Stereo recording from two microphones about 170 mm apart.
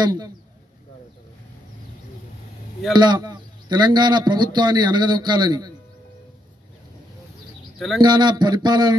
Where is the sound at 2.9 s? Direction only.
25° right (ahead or behind).